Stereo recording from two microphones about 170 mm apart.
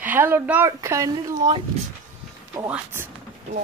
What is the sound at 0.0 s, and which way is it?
Speech, 10° right (ahead or behind).